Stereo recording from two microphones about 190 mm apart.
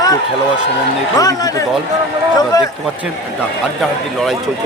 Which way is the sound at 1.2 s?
20° left (ahead or behind).